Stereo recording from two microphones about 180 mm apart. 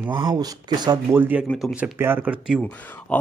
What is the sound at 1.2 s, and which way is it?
Speech, 10° right (ahead or behind).